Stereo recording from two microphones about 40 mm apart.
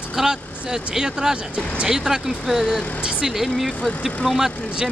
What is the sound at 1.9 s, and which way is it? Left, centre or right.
Speech, centre.